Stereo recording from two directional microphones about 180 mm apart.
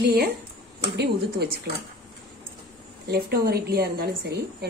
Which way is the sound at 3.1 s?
60° right (ahead or behind).